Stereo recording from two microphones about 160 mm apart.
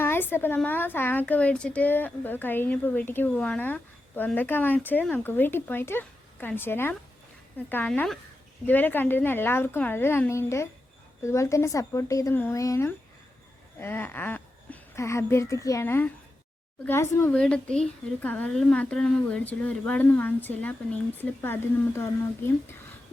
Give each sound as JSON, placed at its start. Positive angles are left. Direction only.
{"t": 0.0, "sound": "a woman's voice", "side_deg": 15}